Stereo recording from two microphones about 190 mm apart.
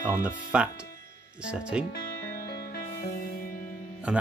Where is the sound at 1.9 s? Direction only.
55° left (ahead or behind).